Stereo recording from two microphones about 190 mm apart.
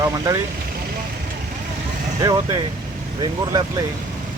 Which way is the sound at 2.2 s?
20° right (ahead or behind).